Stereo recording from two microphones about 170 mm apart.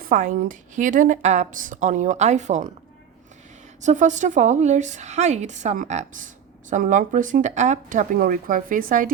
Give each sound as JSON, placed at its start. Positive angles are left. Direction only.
{"t": 0.0, "sound": "a woman's voice", "side_deg": -50}
{"t": 3.8, "sound": "a woman's voice", "side_deg": -45}